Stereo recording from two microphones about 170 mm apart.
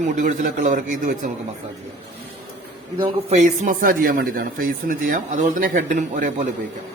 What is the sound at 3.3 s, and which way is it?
A man's voice, 45° right (ahead or behind).